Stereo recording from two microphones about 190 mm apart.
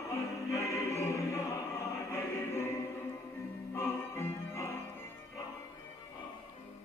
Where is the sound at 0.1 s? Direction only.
15° left (ahead or behind).